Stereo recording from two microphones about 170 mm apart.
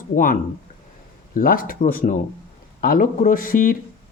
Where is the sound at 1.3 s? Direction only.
55° left (ahead or behind).